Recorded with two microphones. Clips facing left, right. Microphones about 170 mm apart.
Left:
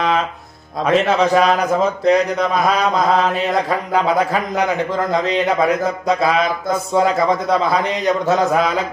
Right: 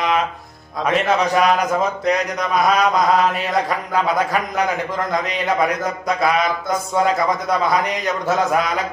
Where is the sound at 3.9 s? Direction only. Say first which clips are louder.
Left 2 dB; 30° left (ahead or behind).